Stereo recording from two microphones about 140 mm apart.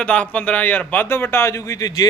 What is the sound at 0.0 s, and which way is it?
A man's voice, 10° left (ahead or behind).